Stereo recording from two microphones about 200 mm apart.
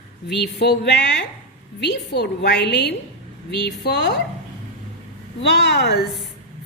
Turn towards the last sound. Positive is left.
turn(degrees=55)  # may be behind; listen again after turning